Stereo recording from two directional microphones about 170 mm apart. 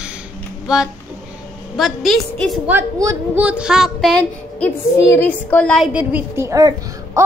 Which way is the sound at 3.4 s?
5° right (ahead or behind).